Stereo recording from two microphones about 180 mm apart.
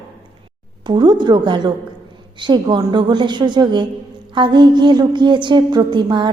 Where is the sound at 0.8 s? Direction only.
25° right (ahead or behind).